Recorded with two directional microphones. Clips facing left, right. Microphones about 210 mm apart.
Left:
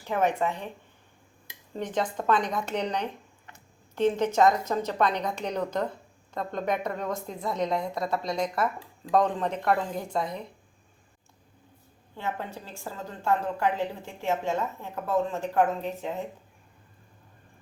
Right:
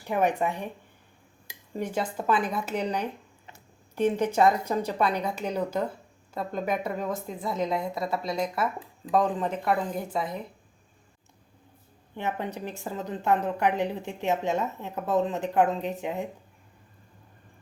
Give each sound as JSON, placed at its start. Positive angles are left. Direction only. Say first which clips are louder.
{"t": 0.0, "sound": "a woman's voice", "louder": "right 1 dB", "side_deg": -15}
{"t": 1.7, "sound": "a woman's voice", "louder": "even", "side_deg": -10}
{"t": 12.1, "sound": "a woman's voice", "louder": "right 3 dB", "side_deg": -20}